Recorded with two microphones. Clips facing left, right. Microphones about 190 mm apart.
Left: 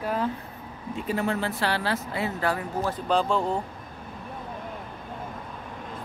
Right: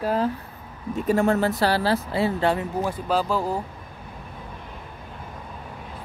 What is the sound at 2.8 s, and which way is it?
Speech, 5° right (ahead or behind).